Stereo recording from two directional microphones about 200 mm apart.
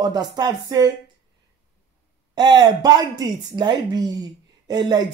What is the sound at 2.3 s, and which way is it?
Speech, 20° right (ahead or behind).